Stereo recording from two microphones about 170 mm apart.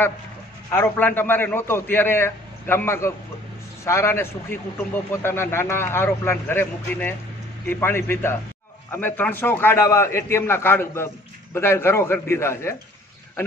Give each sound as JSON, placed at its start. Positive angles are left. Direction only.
{"t": 0.7, "sound": "a man's voice", "side_deg": 15}